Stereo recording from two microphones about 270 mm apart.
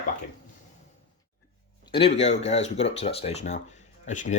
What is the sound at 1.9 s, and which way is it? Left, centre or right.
Speech, left.